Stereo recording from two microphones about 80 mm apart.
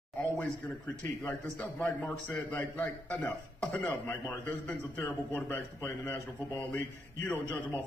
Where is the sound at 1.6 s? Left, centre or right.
Centre.